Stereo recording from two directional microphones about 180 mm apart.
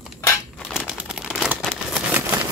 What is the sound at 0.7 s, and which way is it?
Crumpling, centre (ahead or behind).